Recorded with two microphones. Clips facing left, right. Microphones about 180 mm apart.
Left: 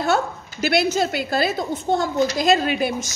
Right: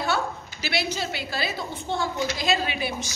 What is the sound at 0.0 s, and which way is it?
A woman's voice, 50° left (ahead or behind).